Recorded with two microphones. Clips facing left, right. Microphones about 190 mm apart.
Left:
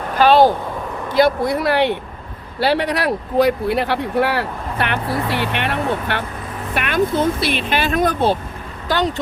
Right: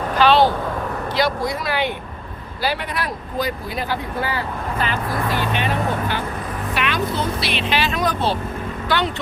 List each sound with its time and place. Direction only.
0.2 s a sound: 45° left (ahead or behind)
1.1 s speech: 55° left (ahead or behind)
6.7 s speech: 50° left (ahead or behind)
8.9 s speech: 40° left (ahead or behind)